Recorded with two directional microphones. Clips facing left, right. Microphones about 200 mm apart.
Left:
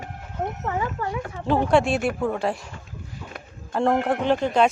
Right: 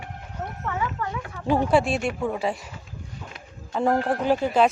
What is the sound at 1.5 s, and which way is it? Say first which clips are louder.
Speech: left 1 dB; centre (ahead or behind).